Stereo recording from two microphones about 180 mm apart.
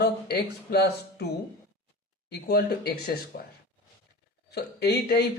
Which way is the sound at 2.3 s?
60° left (ahead or behind).